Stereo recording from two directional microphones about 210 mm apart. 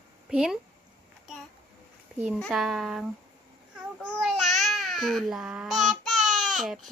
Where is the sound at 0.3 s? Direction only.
5° right (ahead or behind).